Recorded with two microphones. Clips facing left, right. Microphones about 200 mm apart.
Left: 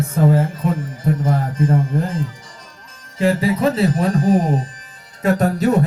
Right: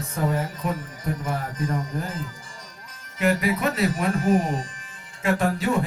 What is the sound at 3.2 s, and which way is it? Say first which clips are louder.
Speech: left 6 dB; 30° left (ahead or behind).